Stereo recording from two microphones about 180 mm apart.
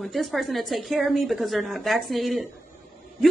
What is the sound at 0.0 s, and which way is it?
A woman's voice, centre (ahead or behind).